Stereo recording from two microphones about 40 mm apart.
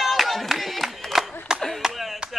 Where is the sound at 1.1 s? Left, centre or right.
Centre.